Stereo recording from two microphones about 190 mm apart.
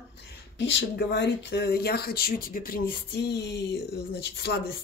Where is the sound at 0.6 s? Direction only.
70° left (ahead or behind).